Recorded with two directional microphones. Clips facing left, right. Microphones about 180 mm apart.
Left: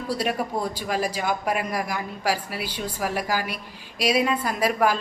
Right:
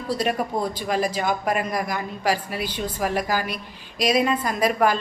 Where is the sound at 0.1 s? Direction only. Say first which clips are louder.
Right 2 dB; 10° left (ahead or behind).